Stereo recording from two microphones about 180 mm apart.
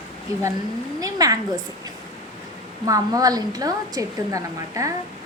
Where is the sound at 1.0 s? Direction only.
20° right (ahead or behind).